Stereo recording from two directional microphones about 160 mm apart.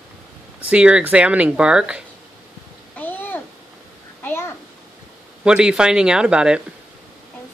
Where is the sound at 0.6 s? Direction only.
10° right (ahead or behind).